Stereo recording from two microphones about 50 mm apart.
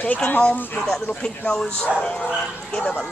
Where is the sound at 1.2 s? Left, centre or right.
Centre.